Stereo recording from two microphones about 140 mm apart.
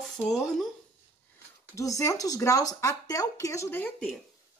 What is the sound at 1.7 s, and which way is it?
Speech, 20° left (ahead or behind).